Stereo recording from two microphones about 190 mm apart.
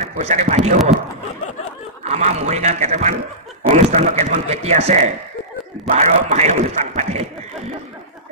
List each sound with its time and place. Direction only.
0.0 s speech: 40° right (ahead or behind)
2.0 s a man's voice: 35° right (ahead or behind)